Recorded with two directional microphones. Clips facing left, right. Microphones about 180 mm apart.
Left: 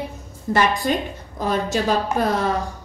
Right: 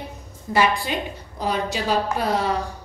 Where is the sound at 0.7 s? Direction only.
45° left (ahead or behind).